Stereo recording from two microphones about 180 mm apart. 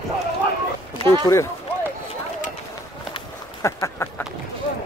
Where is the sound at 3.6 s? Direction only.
15° left (ahead or behind).